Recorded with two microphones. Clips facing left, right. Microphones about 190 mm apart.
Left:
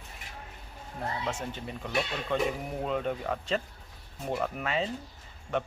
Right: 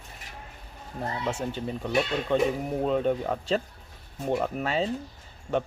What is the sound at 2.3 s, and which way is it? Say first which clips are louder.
Speech: right 5 dB; 30° right (ahead or behind).